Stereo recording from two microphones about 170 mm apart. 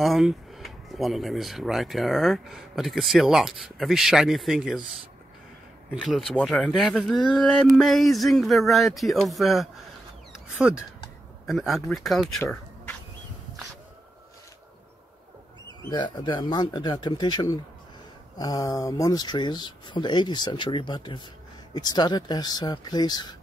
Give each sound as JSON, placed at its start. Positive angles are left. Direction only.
{"t": 0.0, "sound": "speech", "side_deg": 0}
{"t": 5.9, "sound": "speech", "side_deg": 0}
{"t": 15.9, "sound": "speech", "side_deg": 25}